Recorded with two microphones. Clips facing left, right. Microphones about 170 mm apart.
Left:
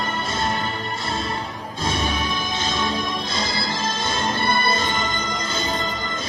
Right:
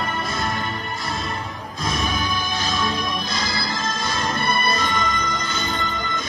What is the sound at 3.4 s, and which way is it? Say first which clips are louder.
Music: left 1 dB; 25° left (ahead or behind).